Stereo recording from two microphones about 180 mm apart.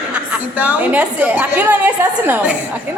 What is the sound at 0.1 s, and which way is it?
A woman's voice, 10° right (ahead or behind).